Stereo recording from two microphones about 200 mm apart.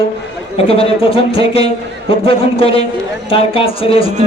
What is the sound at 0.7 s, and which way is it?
A man's voice, 30° left (ahead or behind).